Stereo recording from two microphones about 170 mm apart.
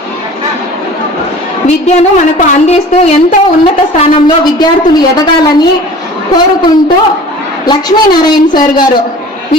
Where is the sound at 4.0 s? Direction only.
25° left (ahead or behind).